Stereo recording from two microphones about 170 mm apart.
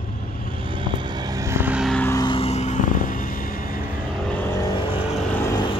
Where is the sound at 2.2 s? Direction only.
30° left (ahead or behind); by 3.8 s 55° left (ahead or behind).